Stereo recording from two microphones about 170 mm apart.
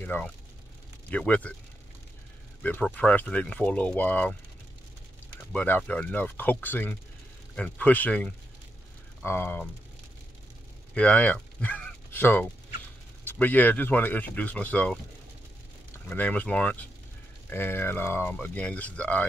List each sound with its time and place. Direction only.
0.0 s speech: 10° left (ahead or behind)
2.6 s speech: 10° left (ahead or behind)
5.5 s speech: 10° left (ahead or behind)
11.0 s speech: 10° left (ahead or behind)
16.1 s speech: 10° left (ahead or behind)